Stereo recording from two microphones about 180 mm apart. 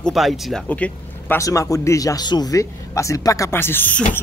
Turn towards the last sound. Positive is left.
turn(degrees=10)  # may be behind; listen again after turning